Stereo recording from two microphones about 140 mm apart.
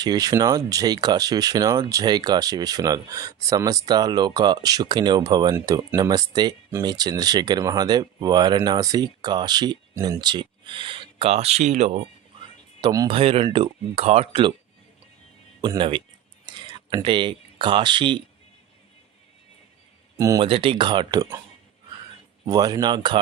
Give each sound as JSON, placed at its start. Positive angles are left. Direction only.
{"t": 0.0, "sound": "speech", "side_deg": -30}
{"t": 12.8, "sound": "speech", "side_deg": -25}
{"t": 13.1, "sound": "speech", "side_deg": -40}
{"t": 15.6, "sound": "speech", "side_deg": -35}
{"t": 20.1, "sound": "speech", "side_deg": -25}
{"t": 20.4, "sound": "speech", "side_deg": -40}
{"t": 22.4, "sound": "speech", "side_deg": -25}